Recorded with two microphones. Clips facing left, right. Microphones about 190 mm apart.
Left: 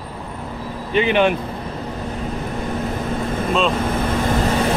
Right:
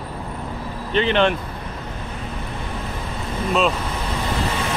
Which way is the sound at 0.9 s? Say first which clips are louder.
Left 2 dB; 10° left (ahead or behind).